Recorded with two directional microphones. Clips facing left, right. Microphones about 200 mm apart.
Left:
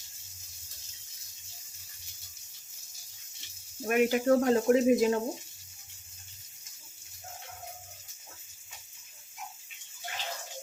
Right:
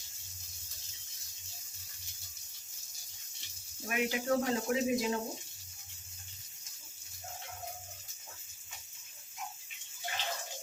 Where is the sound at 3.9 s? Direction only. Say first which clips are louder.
Left 8 dB; 50° left (ahead or behind).